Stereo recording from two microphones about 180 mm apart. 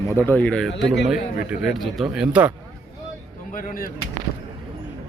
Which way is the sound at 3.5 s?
50° left (ahead or behind).